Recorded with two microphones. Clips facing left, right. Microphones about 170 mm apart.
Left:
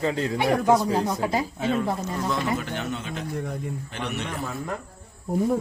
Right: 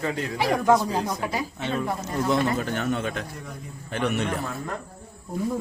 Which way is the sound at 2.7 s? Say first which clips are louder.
Right 4 dB; 50° right (ahead or behind).